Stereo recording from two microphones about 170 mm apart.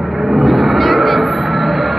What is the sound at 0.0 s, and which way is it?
Vehicle, centre (ahead or behind).